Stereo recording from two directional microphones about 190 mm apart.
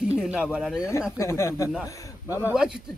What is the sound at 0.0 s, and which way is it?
Speech, 5° right (ahead or behind).